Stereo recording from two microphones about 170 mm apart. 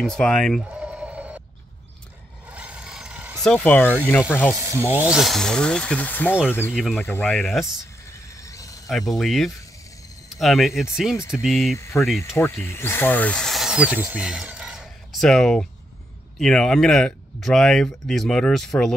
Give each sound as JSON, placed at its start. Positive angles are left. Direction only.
{"t": 0.0, "sound": "speech", "side_deg": 5}
{"t": 0.7, "sound": "bleat", "side_deg": -5}
{"t": 2.5, "sound": "vehicle", "side_deg": -5}
{"t": 3.4, "sound": "speech", "side_deg": 5}
{"t": 4.6, "sound": "speech", "side_deg": -15}
{"t": 6.7, "sound": "speech", "side_deg": 0}
{"t": 7.0, "sound": "speech", "side_deg": 10}
{"t": 8.5, "sound": "cricket", "side_deg": 20}
{"t": 8.8, "sound": "speech", "side_deg": 0}
{"t": 11.8, "sound": "speech", "side_deg": 15}